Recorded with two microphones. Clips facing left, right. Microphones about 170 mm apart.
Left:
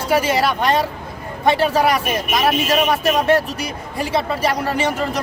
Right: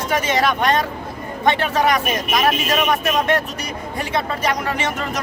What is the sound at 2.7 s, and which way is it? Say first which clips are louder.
A man's voice: left 2 dB; 30° left (ahead or behind).